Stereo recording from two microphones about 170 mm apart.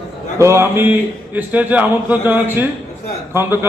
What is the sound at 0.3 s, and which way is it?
A man's voice, 15° right (ahead or behind).